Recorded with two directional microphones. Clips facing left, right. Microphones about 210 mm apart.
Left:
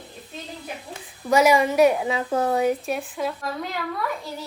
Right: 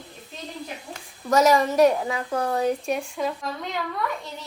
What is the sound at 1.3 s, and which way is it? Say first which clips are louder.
Speech: left 1 dB; 5° left (ahead or behind).